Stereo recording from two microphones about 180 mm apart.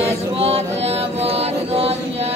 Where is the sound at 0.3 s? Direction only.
35° right (ahead or behind).